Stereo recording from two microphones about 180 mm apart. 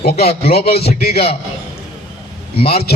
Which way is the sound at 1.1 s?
30° left (ahead or behind).